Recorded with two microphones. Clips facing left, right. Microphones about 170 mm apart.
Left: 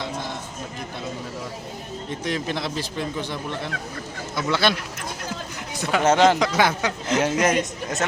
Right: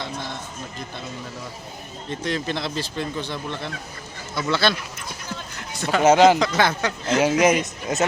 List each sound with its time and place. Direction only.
2.0 s speech: 10° left (ahead or behind)
5.7 s a sound: 15° left (ahead or behind)
6.0 s speech: 5° right (ahead or behind)
6.4 s speech: 10° left (ahead or behind)
7.2 s a man's voice: centre (ahead or behind)